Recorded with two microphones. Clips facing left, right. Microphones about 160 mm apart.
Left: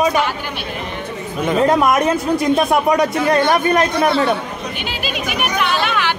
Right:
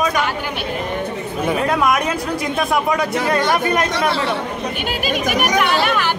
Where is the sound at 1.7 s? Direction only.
25° left (ahead or behind).